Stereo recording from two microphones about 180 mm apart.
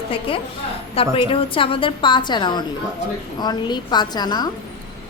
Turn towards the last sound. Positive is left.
turn(degrees=20)  # may be behind; listen again after turning